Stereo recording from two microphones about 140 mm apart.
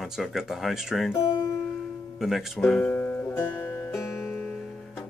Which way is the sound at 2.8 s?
15° left (ahead or behind).